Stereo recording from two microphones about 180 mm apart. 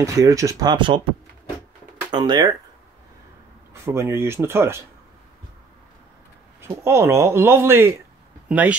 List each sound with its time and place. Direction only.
0.0 s speech: 20° right (ahead or behind)
2.0 s speech: 25° right (ahead or behind)
3.7 s speech: 15° right (ahead or behind)
6.6 s speech: 15° right (ahead or behind)